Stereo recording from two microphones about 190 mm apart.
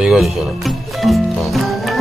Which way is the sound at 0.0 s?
5° right (ahead or behind).